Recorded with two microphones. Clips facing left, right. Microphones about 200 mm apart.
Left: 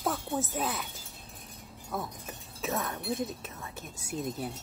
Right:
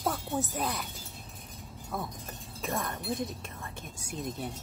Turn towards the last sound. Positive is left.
turn(degrees=5)  # may be behind; listen again after turning